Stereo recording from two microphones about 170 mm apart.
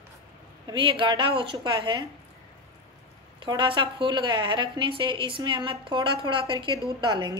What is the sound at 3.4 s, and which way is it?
A woman's voice, 30° right (ahead or behind).